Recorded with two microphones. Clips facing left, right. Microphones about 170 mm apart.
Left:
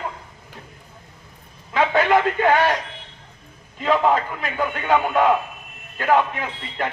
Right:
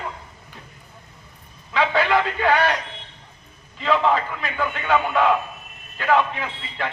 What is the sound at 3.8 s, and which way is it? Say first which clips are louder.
Speech: left 1 dB; 45° left (ahead or behind).